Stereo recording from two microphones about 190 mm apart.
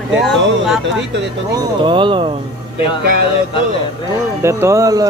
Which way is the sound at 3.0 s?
55° right (ahead or behind).